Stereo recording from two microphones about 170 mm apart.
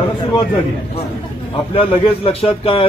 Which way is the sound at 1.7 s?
30° left (ahead or behind).